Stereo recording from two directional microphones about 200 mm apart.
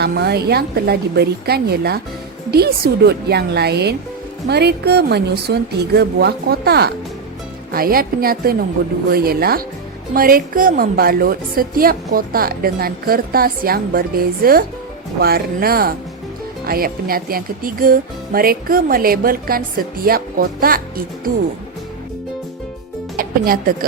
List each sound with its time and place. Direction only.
0.0 s a woman's voice: 55° right (ahead or behind)
23.1 s music: 45° right (ahead or behind)